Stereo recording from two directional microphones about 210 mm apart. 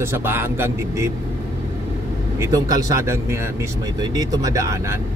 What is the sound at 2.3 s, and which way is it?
Speech, 15° right (ahead or behind).